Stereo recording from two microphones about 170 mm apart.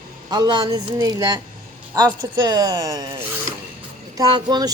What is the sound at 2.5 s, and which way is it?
A woman's voice, 20° right (ahead or behind).